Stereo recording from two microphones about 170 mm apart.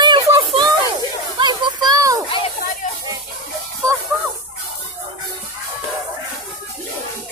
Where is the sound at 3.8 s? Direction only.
20° right (ahead or behind).